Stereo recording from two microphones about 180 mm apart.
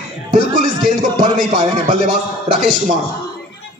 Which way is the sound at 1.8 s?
50° right (ahead or behind).